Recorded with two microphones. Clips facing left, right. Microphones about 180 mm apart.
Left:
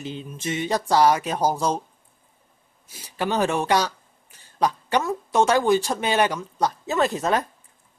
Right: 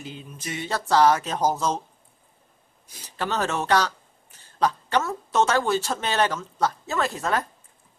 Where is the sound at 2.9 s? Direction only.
10° left (ahead or behind).